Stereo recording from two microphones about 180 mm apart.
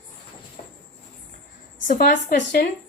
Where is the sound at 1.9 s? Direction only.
45° left (ahead or behind).